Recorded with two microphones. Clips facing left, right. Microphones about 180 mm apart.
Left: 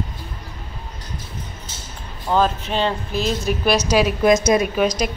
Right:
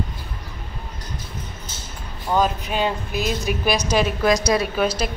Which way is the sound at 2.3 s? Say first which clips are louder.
Left 2 dB; 10° right (ahead or behind).